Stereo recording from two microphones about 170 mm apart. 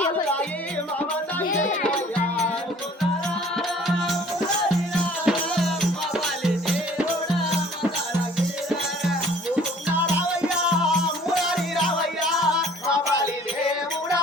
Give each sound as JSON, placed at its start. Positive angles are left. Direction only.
{"t": 1.5, "sound": "music", "side_deg": 50}
{"t": 5.2, "sound": "music", "side_deg": 0}
{"t": 9.6, "sound": "music", "side_deg": -10}